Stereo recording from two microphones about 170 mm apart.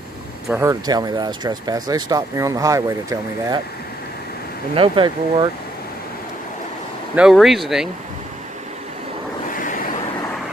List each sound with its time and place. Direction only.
0.5 s speech: 15° right (ahead or behind)
4.7 s speech: 30° right (ahead or behind)
7.2 s speech: centre (ahead or behind)
9.5 s vehicle: 55° left (ahead or behind)